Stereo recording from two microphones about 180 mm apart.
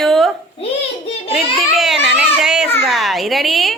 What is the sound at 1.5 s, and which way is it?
A woman's voice, centre (ahead or behind).